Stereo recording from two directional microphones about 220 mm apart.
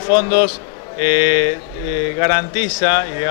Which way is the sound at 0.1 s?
15° left (ahead or behind).